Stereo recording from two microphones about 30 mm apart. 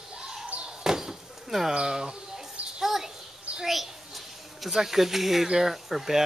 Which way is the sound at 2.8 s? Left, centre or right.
Centre.